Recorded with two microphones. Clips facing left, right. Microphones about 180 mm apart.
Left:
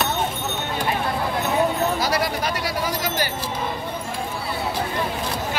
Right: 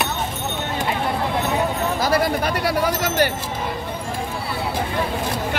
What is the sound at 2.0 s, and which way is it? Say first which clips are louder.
Sheep: right 4 dB; 50° right (ahead or behind).